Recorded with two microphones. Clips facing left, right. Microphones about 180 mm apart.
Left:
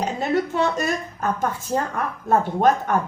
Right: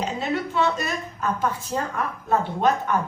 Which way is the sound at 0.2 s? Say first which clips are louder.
Left 3 dB; 45° left (ahead or behind).